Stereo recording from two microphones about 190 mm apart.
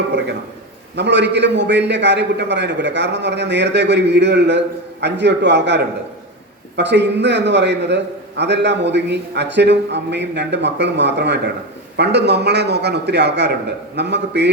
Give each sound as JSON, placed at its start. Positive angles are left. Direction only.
{"t": 0.9, "sound": "a man's voice", "side_deg": -65}